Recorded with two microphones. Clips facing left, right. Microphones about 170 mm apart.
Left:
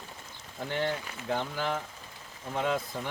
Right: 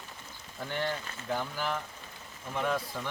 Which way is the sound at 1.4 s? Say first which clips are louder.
Left 2 dB; 30° left (ahead or behind).